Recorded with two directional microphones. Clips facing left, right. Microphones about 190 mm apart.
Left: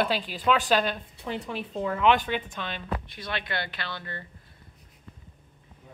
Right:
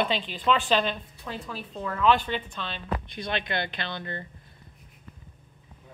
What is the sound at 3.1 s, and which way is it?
Speech, 20° right (ahead or behind).